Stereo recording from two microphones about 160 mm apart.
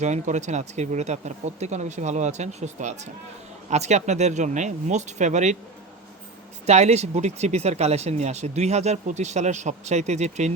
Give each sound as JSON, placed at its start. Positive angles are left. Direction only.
{"t": 0.0, "sound": "speech", "side_deg": -45}
{"t": 6.7, "sound": "speech", "side_deg": -45}